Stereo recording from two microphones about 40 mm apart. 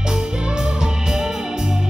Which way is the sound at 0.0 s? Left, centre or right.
Centre.